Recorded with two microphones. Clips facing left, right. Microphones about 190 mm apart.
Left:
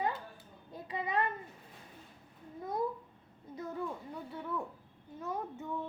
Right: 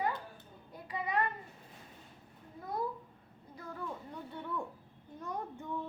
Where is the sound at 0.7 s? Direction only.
25° left (ahead or behind).